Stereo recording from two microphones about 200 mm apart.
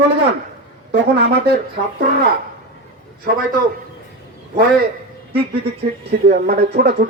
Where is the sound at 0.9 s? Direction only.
55° right (ahead or behind).